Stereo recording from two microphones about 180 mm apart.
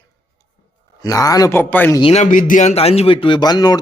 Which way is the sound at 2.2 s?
45° left (ahead or behind).